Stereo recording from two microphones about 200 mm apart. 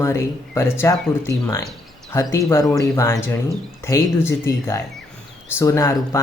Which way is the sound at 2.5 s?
15° left (ahead or behind).